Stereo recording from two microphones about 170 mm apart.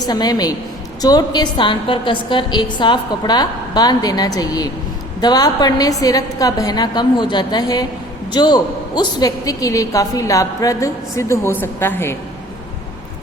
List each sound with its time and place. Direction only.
0.0 s a woman's voice: 25° left (ahead or behind)